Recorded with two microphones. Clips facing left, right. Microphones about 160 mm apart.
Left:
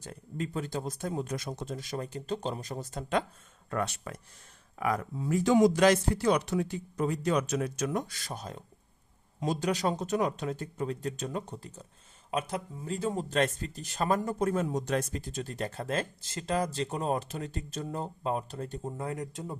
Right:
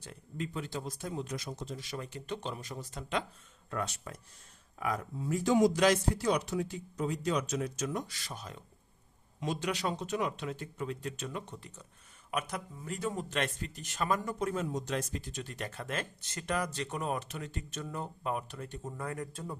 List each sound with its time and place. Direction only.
0.0 s speech: 40° left (ahead or behind)
3.7 s speech: 60° left (ahead or behind); by 5.7 s 85° left
5.7 s speech: 55° left (ahead or behind); by 19.5 s 20° left (ahead or behind)